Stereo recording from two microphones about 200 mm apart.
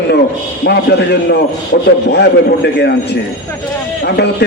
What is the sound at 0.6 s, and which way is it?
A man's voice, 55° left (ahead or behind).